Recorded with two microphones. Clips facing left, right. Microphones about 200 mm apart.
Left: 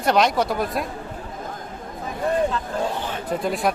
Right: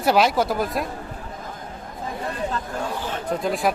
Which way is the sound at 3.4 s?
Centre (ahead or behind).